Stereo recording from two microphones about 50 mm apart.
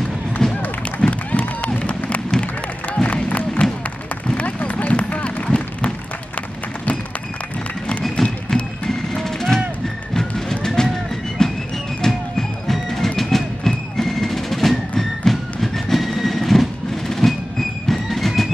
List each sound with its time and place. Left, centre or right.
0.4 s music: centre
1.0 s a sound: centre
1.6 s a sound: left
2.9 s music: left
4.4 s run: left
8.2 s music: centre